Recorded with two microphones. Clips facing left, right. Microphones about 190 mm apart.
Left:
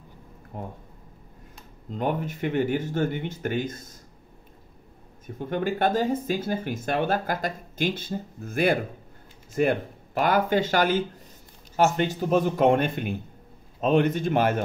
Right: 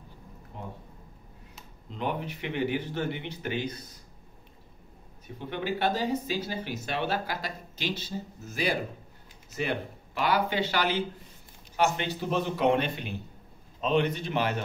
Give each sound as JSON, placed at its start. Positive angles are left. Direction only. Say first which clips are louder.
{"t": 0.5, "sound": "speech", "louder": "left 5 dB", "side_deg": 50}
{"t": 1.9, "sound": "speech", "louder": "left 5 dB", "side_deg": 45}
{"t": 5.2, "sound": "speech", "louder": "left 6 dB", "side_deg": 45}